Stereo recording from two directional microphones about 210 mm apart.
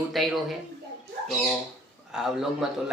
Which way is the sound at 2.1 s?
Centre (ahead or behind).